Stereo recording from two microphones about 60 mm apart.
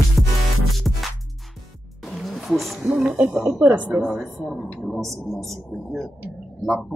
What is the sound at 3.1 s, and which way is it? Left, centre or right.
Speech, centre.